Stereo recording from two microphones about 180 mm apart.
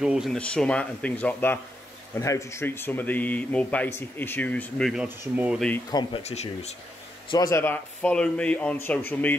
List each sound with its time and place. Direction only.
0.0 s speech: 5° right (ahead or behind)
5.3 s speech: 10° right (ahead or behind)
5.9 s speech: 25° left (ahead or behind)
6.2 s speech: 35° left (ahead or behind)
7.2 s speech: 20° left (ahead or behind)